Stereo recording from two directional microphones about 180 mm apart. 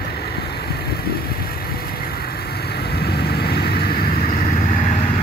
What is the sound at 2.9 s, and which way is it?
Vehicle, 60° left (ahead or behind).